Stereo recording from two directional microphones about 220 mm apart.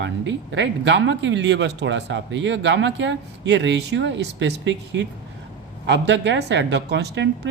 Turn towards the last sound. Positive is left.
turn(degrees=-55)  # may be behind; listen again after turning